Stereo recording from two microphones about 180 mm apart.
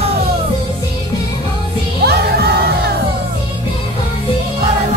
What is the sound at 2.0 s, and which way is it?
Music, 65° right (ahead or behind).